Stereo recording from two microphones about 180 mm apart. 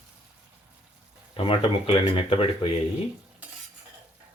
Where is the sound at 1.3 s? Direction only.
30° left (ahead or behind).